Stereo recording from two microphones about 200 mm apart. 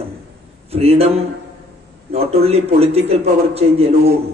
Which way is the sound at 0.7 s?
30° right (ahead or behind).